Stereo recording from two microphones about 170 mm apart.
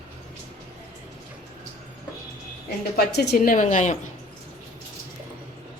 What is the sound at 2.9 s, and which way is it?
Speech, 65° left (ahead or behind).